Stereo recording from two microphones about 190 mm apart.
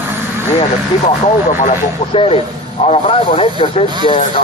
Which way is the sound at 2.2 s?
30° left (ahead or behind).